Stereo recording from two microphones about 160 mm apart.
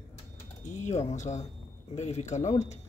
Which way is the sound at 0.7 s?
50° left (ahead or behind).